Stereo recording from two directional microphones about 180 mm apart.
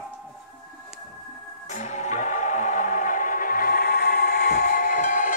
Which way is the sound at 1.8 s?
40° left (ahead or behind).